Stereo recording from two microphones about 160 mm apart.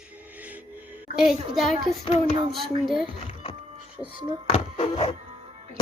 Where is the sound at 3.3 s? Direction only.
35° left (ahead or behind).